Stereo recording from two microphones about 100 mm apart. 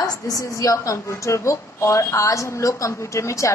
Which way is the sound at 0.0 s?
35° left (ahead or behind).